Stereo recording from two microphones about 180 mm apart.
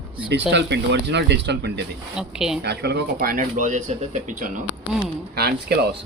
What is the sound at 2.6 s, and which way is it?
Speech, 65° right (ahead or behind).